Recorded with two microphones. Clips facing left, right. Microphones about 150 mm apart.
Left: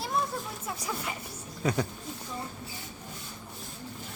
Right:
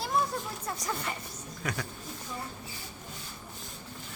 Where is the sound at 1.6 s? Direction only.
30° left (ahead or behind).